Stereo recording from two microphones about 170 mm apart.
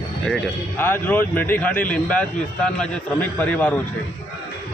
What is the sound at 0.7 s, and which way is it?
Speech, 10° left (ahead or behind).